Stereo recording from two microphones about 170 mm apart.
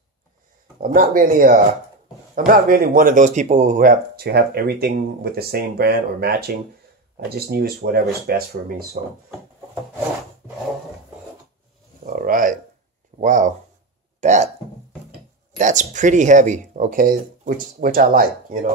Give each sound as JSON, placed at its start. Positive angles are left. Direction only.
{"t": 0.7, "sound": "speech", "side_deg": -50}
{"t": 12.0, "sound": "a sound", "side_deg": -55}
{"t": 14.2, "sound": "hiccup", "side_deg": -45}
{"t": 15.5, "sound": "speech", "side_deg": -45}